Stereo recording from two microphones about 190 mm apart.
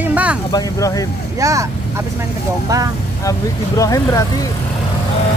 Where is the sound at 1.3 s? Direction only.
15° right (ahead or behind).